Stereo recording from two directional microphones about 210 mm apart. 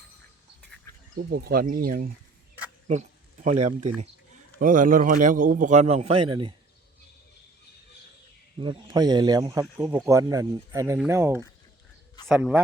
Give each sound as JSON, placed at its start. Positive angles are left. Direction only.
{"t": 1.1, "sound": "speech", "side_deg": -45}
{"t": 3.4, "sound": "a man's voice", "side_deg": -35}
{"t": 8.5, "sound": "speech", "side_deg": -25}